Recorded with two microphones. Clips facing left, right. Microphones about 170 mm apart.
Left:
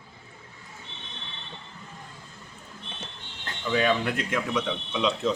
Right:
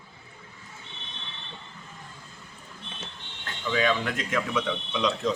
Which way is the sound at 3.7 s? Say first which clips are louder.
Left 1 dB; 10° left (ahead or behind).